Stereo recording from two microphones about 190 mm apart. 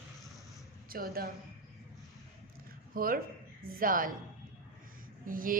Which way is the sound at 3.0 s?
50° right (ahead or behind).